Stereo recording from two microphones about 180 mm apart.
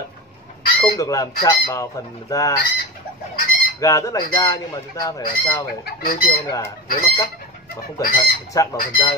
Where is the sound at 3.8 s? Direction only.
15° left (ahead or behind).